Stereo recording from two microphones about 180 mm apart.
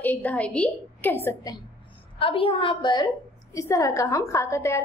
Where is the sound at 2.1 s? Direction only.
30° left (ahead or behind).